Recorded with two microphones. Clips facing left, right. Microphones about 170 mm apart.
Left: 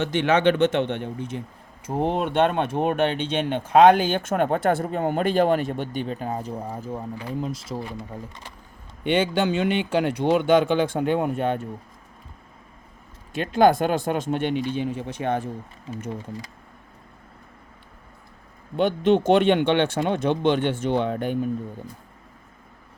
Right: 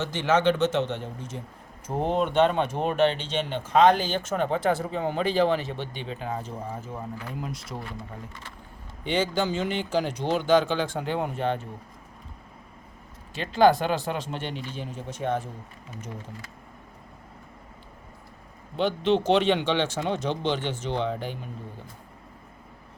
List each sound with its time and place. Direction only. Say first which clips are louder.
0.0 s speech: left 3 dB; 65° left (ahead or behind); by 7.9 s 30° left (ahead or behind)
9.0 s speech: left 4 dB; 60° left (ahead or behind)
13.3 s speech: left 2 dB; 50° left (ahead or behind)
18.8 s speech: left 4 dB; 50° left (ahead or behind)